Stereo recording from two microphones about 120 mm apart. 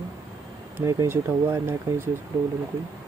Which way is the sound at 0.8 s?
25° right (ahead or behind).